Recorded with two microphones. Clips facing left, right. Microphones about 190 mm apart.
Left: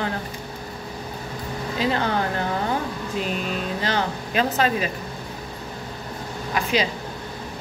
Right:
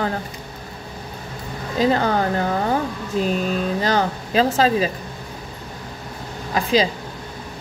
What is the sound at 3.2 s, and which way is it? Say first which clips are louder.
Speech: right 7 dB; 40° right (ahead or behind).